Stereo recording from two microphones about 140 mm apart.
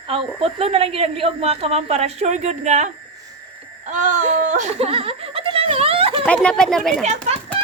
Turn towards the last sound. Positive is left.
turn(degrees=-55)  # may be behind; listen again after turning